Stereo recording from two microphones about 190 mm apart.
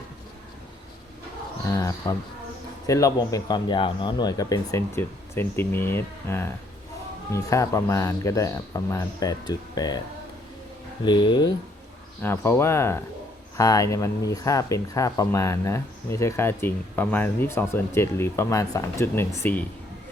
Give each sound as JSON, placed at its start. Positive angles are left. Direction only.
{"t": 1.7, "sound": "speech", "side_deg": 15}
{"t": 11.0, "sound": "speech", "side_deg": 25}
{"t": 12.2, "sound": "speech", "side_deg": 10}